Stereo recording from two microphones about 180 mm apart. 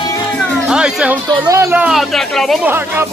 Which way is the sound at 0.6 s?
5° right (ahead or behind).